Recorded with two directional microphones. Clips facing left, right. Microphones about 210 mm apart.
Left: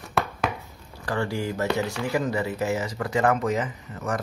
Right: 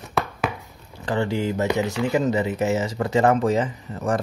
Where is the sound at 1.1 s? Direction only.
20° right (ahead or behind).